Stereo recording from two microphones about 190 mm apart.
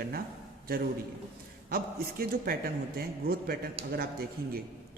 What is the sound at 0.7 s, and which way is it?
Speech, 50° right (ahead or behind).